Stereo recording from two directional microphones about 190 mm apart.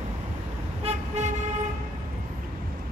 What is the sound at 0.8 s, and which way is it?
Vehicle, 35° right (ahead or behind).